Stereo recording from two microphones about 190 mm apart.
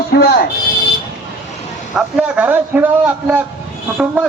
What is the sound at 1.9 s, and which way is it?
A man's voice, 5° right (ahead or behind).